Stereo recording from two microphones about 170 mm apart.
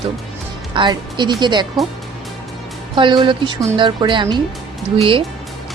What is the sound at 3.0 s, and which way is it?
A woman's voice, 30° right (ahead or behind).